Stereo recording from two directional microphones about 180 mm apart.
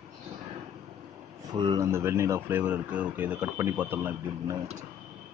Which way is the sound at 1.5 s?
25° right (ahead or behind).